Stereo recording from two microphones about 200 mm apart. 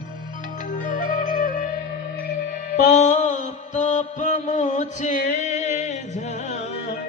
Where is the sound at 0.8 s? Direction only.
40° left (ahead or behind).